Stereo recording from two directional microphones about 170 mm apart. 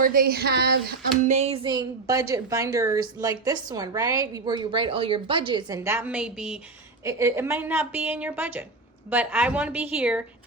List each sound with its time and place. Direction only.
0.0 s speech: 55° right (ahead or behind); by 0.8 s 75° right (ahead or behind)
1.2 s a woman's voice: 40° right (ahead or behind); by 6.6 s 5° right (ahead or behind)
7.0 s a woman's voice: 15° right (ahead or behind)